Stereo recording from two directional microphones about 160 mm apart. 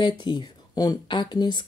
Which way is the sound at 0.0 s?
30° left (ahead or behind).